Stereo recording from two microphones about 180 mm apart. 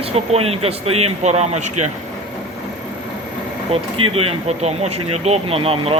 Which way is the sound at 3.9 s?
30° right (ahead or behind).